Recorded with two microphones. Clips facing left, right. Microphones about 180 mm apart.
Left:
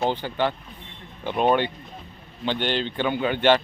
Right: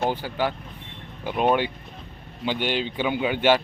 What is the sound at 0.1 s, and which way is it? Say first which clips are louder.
Speech: left 1 dB; 5° right (ahead or behind).